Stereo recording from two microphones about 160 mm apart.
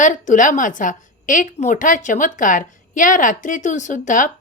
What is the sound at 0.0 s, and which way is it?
A woman's voice, 55° left (ahead or behind).